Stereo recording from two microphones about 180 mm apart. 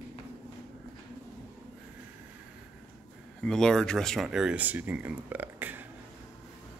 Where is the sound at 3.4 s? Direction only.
5° left (ahead or behind).